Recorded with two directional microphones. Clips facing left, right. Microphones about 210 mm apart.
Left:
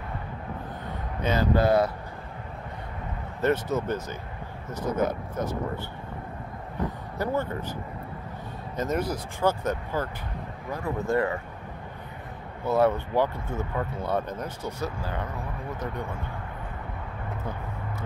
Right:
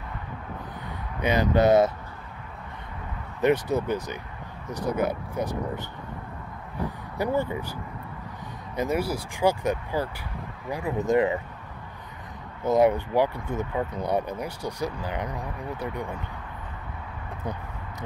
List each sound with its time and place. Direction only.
1.2 s speech: 15° right (ahead or behind)
3.3 s speech: 15° right (ahead or behind)
7.2 s speech: 15° right (ahead or behind)
8.7 s speech: 10° right (ahead or behind)
12.6 s speech: 15° right (ahead or behind)